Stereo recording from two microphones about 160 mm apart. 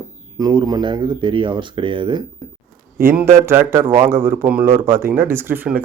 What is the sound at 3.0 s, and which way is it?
Speech, 15° right (ahead or behind).